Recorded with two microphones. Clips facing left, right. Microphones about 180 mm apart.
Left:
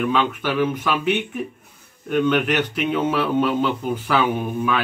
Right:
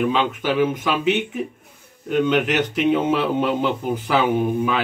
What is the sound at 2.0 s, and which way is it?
A man's voice, 20° right (ahead or behind).